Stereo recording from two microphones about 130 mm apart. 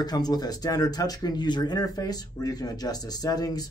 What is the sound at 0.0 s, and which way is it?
Speech, 30° left (ahead or behind).